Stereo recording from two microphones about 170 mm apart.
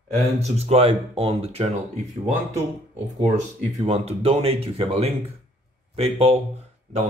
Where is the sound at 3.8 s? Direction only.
35° right (ahead or behind).